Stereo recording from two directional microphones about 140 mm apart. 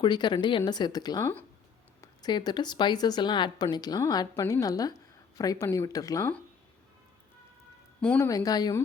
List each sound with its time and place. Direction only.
0.0 s speech: 30° left (ahead or behind)
1.2 s speech: 10° left (ahead or behind)
2.0 s a woman's voice: 30° left (ahead or behind)
8.0 s speech: 10° left (ahead or behind)
8.3 s a woman's voice: 25° left (ahead or behind)